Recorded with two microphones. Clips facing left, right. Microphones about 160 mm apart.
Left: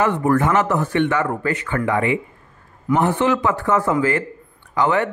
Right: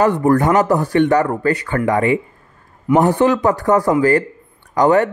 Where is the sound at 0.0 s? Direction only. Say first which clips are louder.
Right 4 dB; 35° right (ahead or behind).